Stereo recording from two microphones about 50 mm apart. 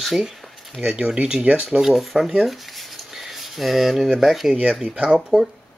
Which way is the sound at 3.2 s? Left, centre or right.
Centre.